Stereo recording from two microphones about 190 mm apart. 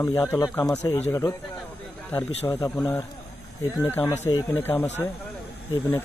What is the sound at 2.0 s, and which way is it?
A man's voice, 15° left (ahead or behind).